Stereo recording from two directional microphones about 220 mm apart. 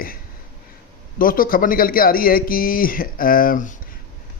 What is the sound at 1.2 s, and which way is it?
Speech, 40° left (ahead or behind).